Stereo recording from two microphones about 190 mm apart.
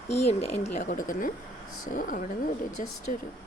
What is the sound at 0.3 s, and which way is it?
Speech, 35° left (ahead or behind).